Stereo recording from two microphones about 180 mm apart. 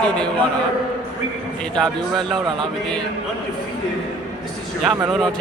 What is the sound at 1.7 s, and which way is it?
Speech, centre (ahead or behind).